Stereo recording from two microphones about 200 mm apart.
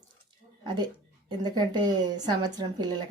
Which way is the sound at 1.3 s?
20° right (ahead or behind).